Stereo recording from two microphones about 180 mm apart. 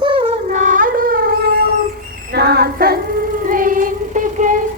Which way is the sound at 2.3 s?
65° right (ahead or behind).